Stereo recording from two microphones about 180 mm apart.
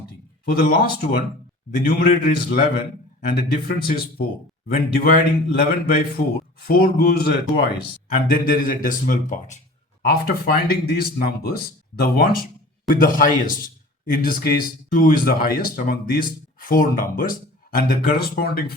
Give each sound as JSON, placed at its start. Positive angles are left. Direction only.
{"t": 0.1, "sound": "speech", "side_deg": 55}
{"t": 5.0, "sound": "speech", "side_deg": 55}
{"t": 10.1, "sound": "speech", "side_deg": 55}